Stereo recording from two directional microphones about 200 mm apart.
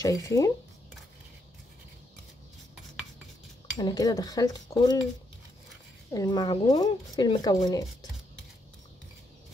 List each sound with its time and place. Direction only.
0.0 s speech: 15° left (ahead or behind)
3.7 s speech: 20° left (ahead or behind)
6.1 s speech: 20° left (ahead or behind)